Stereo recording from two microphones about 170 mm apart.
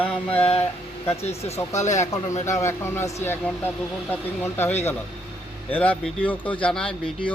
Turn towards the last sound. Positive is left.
turn(degrees=5)  # may be behind; listen again after turning